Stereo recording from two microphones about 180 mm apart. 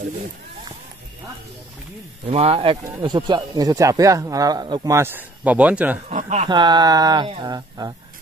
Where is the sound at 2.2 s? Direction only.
35° right (ahead or behind).